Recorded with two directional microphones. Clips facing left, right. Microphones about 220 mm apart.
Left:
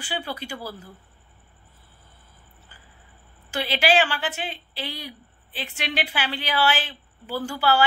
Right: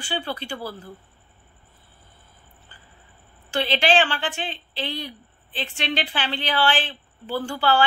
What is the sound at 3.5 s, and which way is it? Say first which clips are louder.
Speech: right 1 dB; 10° left (ahead or behind).